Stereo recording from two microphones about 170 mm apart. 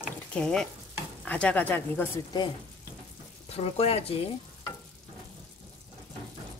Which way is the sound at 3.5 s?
35° left (ahead or behind).